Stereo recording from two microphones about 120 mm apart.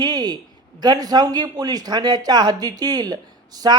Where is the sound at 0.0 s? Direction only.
35° right (ahead or behind).